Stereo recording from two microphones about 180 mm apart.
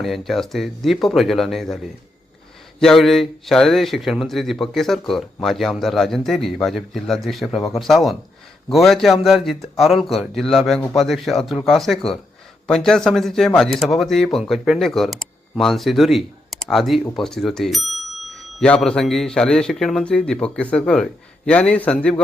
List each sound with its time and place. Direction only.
0.0 s speech: centre (ahead or behind)